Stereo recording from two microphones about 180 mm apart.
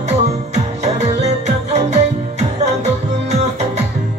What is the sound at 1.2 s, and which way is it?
Music, 40° right (ahead or behind).